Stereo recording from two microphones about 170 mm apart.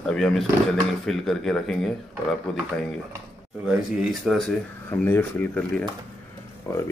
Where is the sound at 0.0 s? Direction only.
5° left (ahead or behind).